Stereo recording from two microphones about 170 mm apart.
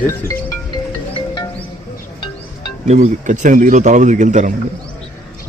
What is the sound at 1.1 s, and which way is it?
Music, 30° left (ahead or behind).